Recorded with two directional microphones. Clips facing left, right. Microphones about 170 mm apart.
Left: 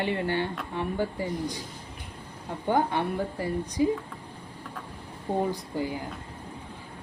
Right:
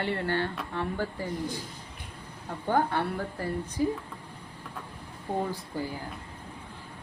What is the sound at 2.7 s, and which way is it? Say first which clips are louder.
Speech: left 1 dB; 15° left (ahead or behind).